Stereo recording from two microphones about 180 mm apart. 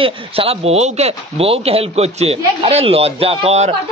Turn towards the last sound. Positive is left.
turn(degrees=-35)  # may be behind; listen again after turning